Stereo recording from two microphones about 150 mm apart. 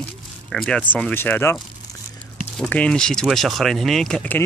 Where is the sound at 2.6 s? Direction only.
10° left (ahead or behind).